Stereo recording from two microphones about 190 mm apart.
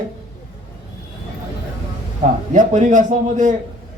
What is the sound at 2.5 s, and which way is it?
A man's voice, 40° right (ahead or behind).